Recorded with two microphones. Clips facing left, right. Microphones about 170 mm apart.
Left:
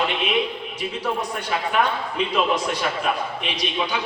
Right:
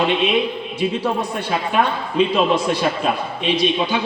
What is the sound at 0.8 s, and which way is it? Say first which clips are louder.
A man's voice: right 6 dB; 30° right (ahead or behind).